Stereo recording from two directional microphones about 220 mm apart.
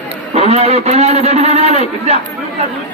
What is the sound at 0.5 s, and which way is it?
A man's voice, 30° right (ahead or behind).